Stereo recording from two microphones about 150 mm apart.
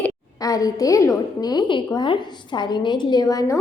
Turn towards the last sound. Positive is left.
turn(degrees=25)  # may be behind; listen again after turning